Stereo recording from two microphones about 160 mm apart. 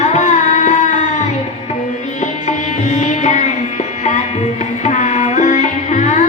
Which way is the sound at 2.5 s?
50° left (ahead or behind).